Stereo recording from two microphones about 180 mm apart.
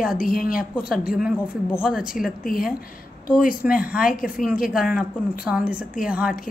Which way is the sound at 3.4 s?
50° left (ahead or behind).